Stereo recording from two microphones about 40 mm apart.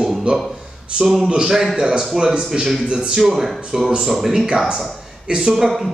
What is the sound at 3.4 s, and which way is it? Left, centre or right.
Speech, centre.